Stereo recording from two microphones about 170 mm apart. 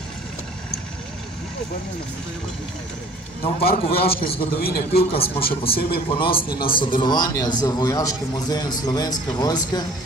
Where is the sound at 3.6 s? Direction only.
65° left (ahead or behind).